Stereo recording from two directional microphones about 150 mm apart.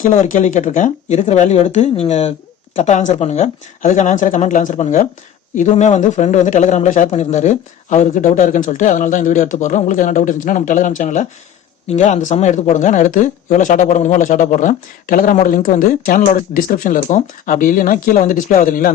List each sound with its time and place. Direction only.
0.0 s speech: 55° left (ahead or behind)